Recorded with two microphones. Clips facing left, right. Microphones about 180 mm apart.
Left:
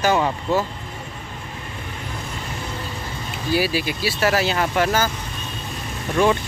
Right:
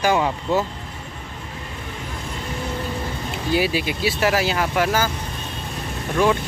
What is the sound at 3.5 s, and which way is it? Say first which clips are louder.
Speech: even; 20° right (ahead or behind).